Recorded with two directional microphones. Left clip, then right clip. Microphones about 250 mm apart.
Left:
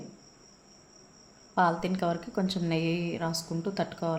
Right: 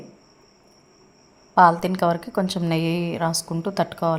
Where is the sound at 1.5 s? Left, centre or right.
Right.